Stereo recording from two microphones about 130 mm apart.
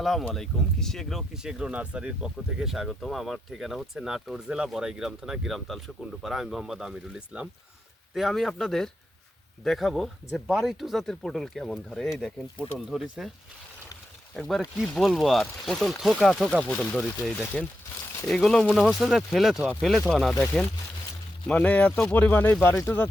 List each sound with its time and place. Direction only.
0.0 s speech: centre (ahead or behind)
14.3 s speech: 5° left (ahead or behind); by 23.0 s 20° left (ahead or behind)